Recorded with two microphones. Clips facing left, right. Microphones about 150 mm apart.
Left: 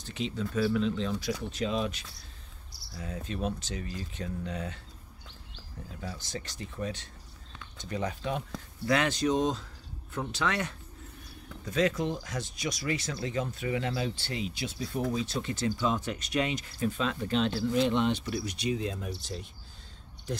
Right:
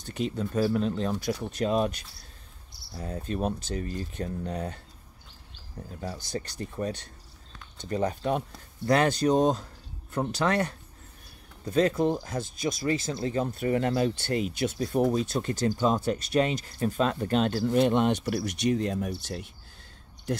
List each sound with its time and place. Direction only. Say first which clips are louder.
0.0 s speech: right 3 dB; 50° right (ahead or behind)
3.0 s speech: right 4 dB; 40° right (ahead or behind)
5.8 s speech: right 4 dB; 40° right (ahead or behind)
7.9 s speech: right 6 dB; 40° right (ahead or behind)
13.2 s speech: right 4 dB; 35° right (ahead or behind)
13.6 s speech: right 6 dB; 45° right (ahead or behind)
19.2 s speech: right 3 dB; 65° right (ahead or behind)